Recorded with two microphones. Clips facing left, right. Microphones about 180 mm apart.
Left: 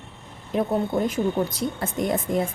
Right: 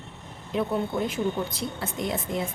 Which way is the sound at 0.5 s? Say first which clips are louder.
Left 3 dB; 45° left (ahead or behind).